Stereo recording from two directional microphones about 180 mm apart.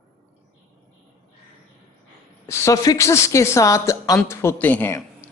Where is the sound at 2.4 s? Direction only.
15° left (ahead or behind).